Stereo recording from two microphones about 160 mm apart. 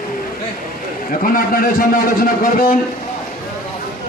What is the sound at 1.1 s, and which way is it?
A man's voice, 60° left (ahead or behind).